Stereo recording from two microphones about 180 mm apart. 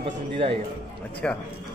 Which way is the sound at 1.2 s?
5° left (ahead or behind).